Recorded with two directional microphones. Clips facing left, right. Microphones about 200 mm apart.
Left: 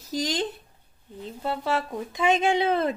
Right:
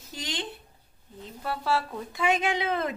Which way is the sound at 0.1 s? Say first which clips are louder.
Left 9 dB; 40° left (ahead or behind).